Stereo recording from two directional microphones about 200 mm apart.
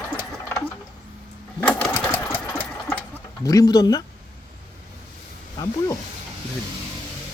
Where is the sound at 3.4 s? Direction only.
15° left (ahead or behind).